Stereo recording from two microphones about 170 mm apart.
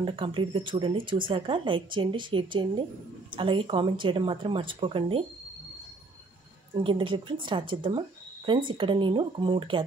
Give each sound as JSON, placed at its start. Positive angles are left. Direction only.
{"t": 0.0, "sound": "speech", "side_deg": -30}
{"t": 6.7, "sound": "speech", "side_deg": -30}